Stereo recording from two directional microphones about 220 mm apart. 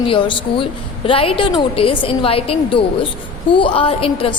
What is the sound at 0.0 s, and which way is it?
A woman's voice, 25° left (ahead or behind).